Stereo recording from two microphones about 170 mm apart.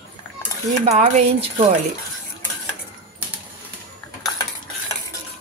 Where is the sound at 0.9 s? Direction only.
40° right (ahead or behind).